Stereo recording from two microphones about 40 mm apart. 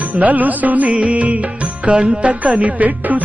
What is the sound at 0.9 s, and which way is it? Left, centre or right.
Music, right.